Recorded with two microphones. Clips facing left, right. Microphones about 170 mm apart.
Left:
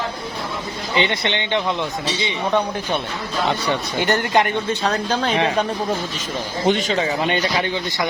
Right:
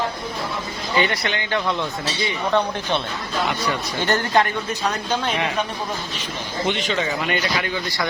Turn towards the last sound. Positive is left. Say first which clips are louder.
# left 3 dB
turn(degrees=30)  # may be behind; listen again after turning